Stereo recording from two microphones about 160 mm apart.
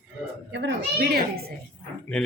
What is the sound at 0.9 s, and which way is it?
Speech, 75° right (ahead or behind).